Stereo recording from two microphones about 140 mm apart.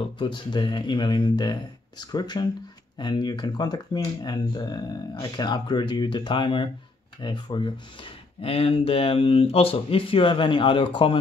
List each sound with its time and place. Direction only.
0.2 s speech: 35° left (ahead or behind)